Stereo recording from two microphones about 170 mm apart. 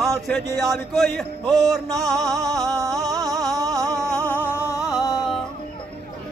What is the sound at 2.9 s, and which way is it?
Music, centre (ahead or behind).